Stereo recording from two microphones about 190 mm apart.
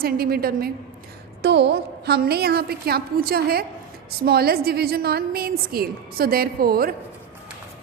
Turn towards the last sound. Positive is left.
turn(degrees=-50)  # may be behind; listen again after turning